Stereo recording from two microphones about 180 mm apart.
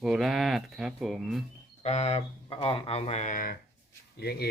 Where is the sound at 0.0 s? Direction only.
Centre (ahead or behind).